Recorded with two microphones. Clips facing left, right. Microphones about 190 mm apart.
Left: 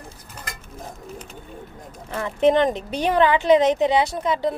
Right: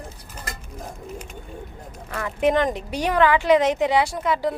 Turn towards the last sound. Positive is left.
turn(degrees=20)  # may be behind; listen again after turning